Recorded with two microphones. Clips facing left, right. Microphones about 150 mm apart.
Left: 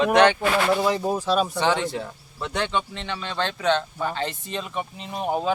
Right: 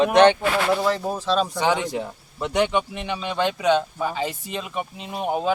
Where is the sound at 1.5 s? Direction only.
10° right (ahead or behind).